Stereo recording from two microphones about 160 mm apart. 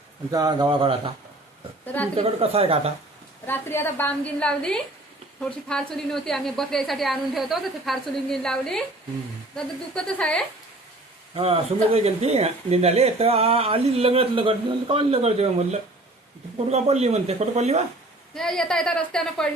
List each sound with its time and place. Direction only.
0.3 s speech: 25° right (ahead or behind)
2.1 s speech: 40° right (ahead or behind)
3.4 s a woman's voice: 15° left (ahead or behind)
11.3 s speech: 35° right (ahead or behind)
18.3 s a woman's voice: 5° left (ahead or behind)